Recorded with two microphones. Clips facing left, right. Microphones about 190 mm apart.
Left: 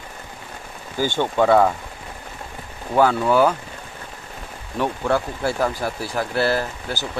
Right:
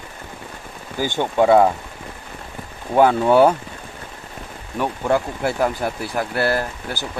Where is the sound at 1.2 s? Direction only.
20° right (ahead or behind).